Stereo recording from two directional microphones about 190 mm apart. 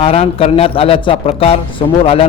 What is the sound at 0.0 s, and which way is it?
Speech, 30° left (ahead or behind).